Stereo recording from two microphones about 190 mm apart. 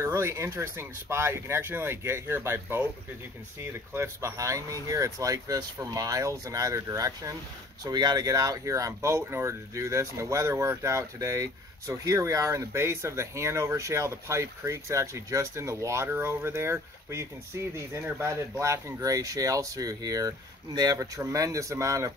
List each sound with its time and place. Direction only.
0.0 s speech: 15° right (ahead or behind)
3.9 s speech: 15° right (ahead or behind)